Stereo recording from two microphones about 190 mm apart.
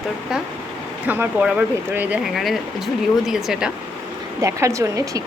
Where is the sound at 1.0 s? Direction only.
10° right (ahead or behind).